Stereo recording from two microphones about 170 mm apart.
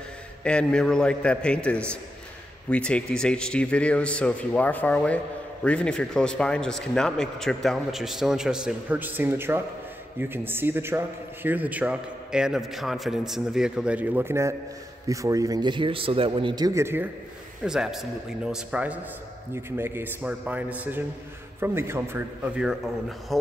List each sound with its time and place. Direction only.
0.4 s a man's voice: 5° left (ahead or behind); by 17.1 s 15° right (ahead or behind)
17.6 s a man's voice: centre (ahead or behind)